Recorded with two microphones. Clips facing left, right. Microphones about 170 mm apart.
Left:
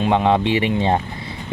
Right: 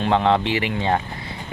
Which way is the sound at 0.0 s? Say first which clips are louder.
Left 2 dB; 15° left (ahead or behind).